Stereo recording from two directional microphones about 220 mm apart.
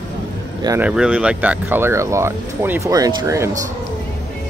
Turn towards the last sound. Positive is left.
turn(degrees=-15)  # may be behind; listen again after turning